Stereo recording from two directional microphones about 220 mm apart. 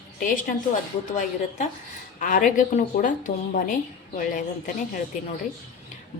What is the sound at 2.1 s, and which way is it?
Speech, 35° left (ahead or behind).